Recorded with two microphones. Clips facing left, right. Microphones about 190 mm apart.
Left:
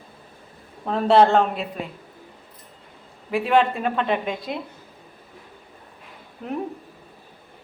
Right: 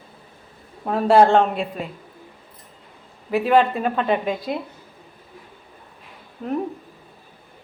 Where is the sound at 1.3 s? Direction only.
Centre (ahead or behind).